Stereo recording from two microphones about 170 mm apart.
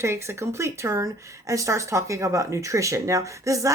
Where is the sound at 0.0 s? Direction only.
15° right (ahead or behind).